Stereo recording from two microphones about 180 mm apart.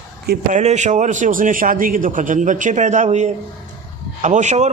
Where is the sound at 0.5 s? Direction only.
40° right (ahead or behind).